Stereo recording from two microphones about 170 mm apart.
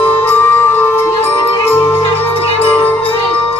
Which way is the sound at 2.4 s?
35° left (ahead or behind).